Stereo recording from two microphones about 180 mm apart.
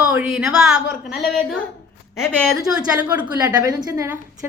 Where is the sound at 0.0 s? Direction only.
10° right (ahead or behind).